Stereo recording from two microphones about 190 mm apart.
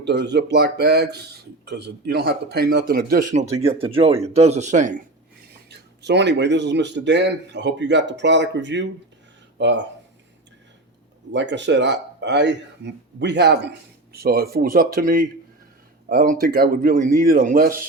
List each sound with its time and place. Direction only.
0.0 s speech: 60° right (ahead or behind)
3.3 s speech: 30° right (ahead or behind)
6.0 s a man's voice: 65° right (ahead or behind)
11.3 s speech: 70° right (ahead or behind); by 17.8 s 50° right (ahead or behind)